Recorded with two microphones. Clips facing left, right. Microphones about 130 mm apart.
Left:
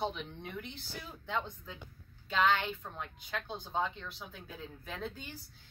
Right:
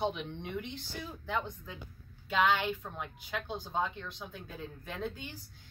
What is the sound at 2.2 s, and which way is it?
A woman's voice, 5° right (ahead or behind).